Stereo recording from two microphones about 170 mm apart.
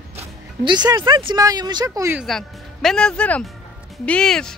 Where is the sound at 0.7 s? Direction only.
25° right (ahead or behind).